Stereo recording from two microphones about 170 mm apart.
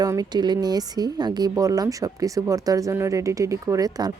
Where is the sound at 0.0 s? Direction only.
20° right (ahead or behind).